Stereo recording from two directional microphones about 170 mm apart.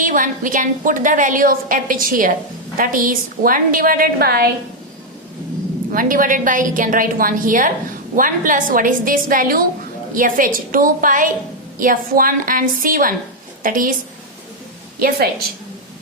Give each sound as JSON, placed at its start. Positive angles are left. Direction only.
{"t": 0.0, "sound": "a woman's voice", "side_deg": -50}
{"t": 5.9, "sound": "a woman's voice", "side_deg": -55}
{"t": 14.9, "sound": "a woman's voice", "side_deg": -60}